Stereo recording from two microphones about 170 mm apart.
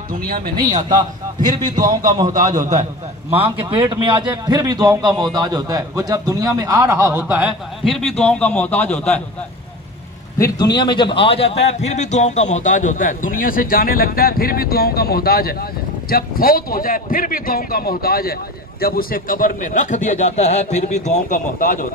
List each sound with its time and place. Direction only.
1.8 s a man's voice: 20° right (ahead or behind); by 9.2 s 5° left (ahead or behind)
10.4 s a man's voice: 25° left (ahead or behind); by 21.8 s 50° left (ahead or behind)